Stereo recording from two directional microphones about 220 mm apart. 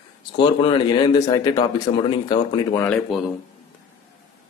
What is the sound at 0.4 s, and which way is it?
Speech, 25° left (ahead or behind).